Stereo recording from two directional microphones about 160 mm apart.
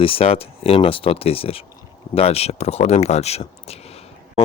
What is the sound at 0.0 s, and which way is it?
Speech, 35° left (ahead or behind).